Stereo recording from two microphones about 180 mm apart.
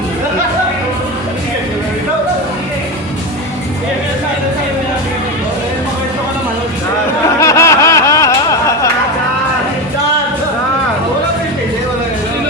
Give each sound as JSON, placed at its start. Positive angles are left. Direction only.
{"t": 7.3, "sound": "snicker", "side_deg": 15}